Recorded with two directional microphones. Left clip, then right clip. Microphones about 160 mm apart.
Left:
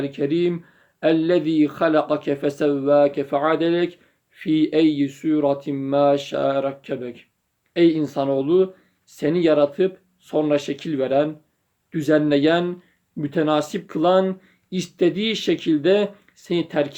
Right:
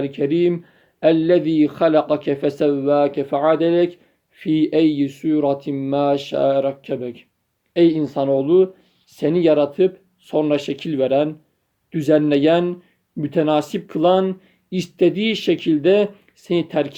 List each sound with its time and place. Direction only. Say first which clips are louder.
0.0 s speech: right 3 dB; 25° right (ahead or behind)